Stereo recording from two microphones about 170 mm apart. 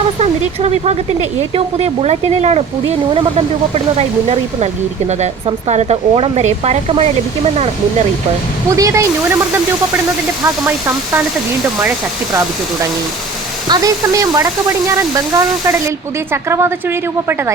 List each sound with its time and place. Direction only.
0.2 s speech: 40° right (ahead or behind)
3.9 s speech: 40° right (ahead or behind)
8.7 s a woman's voice: 20° right (ahead or behind)
10.4 s a woman's voice: 15° right (ahead or behind)
13.7 s a woman's voice: 20° right (ahead or behind)